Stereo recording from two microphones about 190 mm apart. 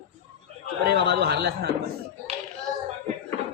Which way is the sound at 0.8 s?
60° right (ahead or behind).